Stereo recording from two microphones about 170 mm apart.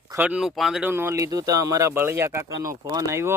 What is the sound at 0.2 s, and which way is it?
Speech, 5° right (ahead or behind).